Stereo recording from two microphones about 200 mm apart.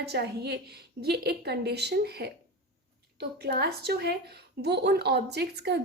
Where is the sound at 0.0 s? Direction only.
55° right (ahead or behind).